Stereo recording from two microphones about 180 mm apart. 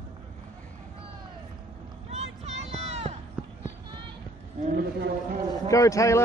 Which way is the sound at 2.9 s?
35° right (ahead or behind).